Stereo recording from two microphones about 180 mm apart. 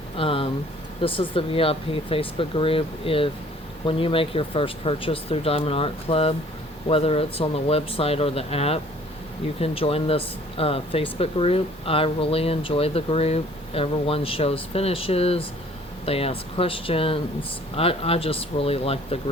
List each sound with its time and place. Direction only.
0.2 s speech: 30° left (ahead or behind)